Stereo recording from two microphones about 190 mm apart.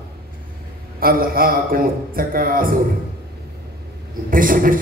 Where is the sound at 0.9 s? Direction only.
50° right (ahead or behind).